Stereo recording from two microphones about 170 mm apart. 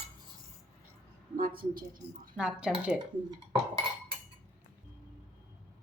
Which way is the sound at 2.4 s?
5° right (ahead or behind).